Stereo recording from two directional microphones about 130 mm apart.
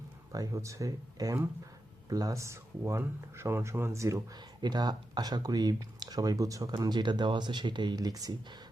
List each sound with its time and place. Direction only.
0.3 s speech: 25° right (ahead or behind)